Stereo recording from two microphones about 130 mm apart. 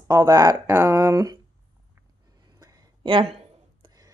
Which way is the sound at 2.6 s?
35° right (ahead or behind).